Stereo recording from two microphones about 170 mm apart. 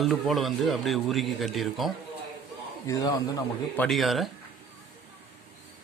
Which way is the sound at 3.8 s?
Centre (ahead or behind).